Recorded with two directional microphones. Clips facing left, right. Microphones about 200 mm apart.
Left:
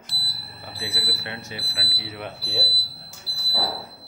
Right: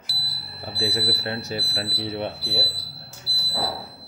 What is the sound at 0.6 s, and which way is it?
Speech, 35° right (ahead or behind).